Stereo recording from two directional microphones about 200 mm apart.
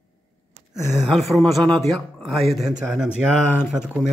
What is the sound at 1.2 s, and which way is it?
Speech, centre (ahead or behind).